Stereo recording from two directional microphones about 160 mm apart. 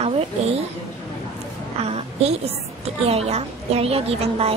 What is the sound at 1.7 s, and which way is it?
A woman's voice, 40° right (ahead or behind).